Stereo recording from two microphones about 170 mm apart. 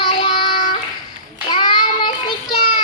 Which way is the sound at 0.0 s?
30° left (ahead or behind).